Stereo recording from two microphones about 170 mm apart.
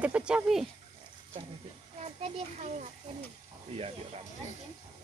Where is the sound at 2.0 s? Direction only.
40° right (ahead or behind).